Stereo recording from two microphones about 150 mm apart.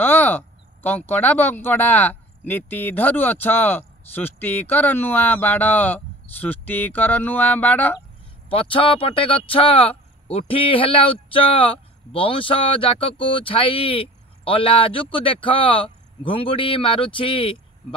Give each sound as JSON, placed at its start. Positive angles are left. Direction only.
{"t": 0.0, "sound": "speech", "side_deg": 10}
{"t": 8.5, "sound": "speech", "side_deg": 35}